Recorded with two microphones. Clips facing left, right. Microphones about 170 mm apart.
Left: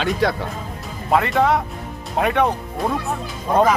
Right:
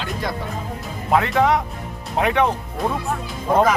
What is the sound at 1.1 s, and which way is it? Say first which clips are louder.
Speech: even; centre (ahead or behind).